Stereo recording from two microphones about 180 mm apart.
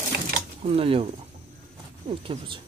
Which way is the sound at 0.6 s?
35° right (ahead or behind).